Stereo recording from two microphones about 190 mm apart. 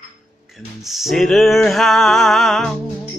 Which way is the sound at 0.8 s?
Centre (ahead or behind).